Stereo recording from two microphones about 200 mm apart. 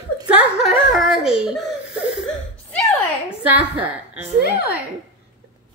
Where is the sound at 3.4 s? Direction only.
10° right (ahead or behind).